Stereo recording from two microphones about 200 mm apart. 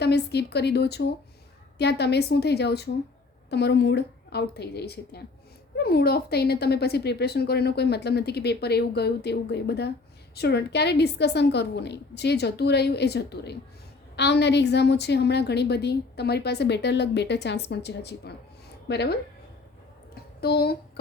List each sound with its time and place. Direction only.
0.0 s a woman's voice: 55° left (ahead or behind)
20.4 s speech: 50° left (ahead or behind)